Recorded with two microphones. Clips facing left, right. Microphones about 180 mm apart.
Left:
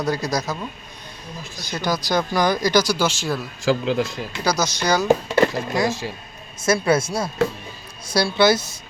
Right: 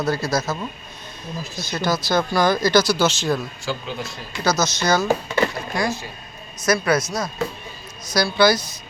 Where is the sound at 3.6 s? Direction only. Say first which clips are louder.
Left 11 dB; 90° left.